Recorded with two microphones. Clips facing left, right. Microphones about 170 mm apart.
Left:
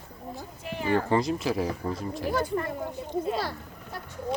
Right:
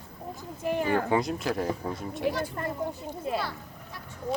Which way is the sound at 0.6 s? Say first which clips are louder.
Right 8 dB; 50° right (ahead or behind).